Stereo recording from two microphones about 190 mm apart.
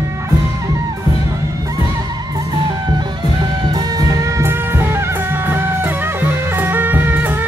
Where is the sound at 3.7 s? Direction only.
20° right (ahead or behind).